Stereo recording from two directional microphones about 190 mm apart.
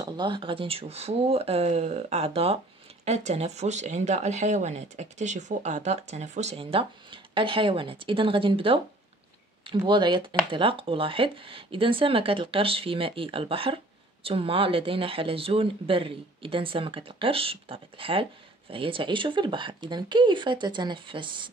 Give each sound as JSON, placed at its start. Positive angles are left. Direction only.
{"t": 0.0, "sound": "speech", "side_deg": -25}